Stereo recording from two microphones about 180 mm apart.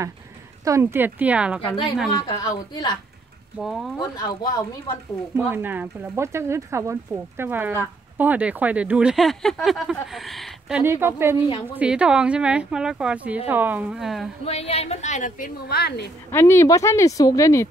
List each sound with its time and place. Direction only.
0.7 s speech: 15° right (ahead or behind)
2.1 s a woman's voice: 20° left (ahead or behind)
3.5 s speech: centre (ahead or behind)
4.0 s a woman's voice: 20° left (ahead or behind)
5.3 s speech: 10° right (ahead or behind)
10.8 s speech: 15° right (ahead or behind)
14.4 s a woman's voice: 35° left (ahead or behind); by 16.1 s 60° left (ahead or behind)
16.3 s speech: 15° left (ahead or behind)